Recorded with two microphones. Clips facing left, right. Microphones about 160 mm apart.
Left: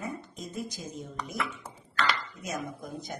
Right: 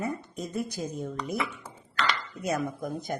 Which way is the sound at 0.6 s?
65° right (ahead or behind).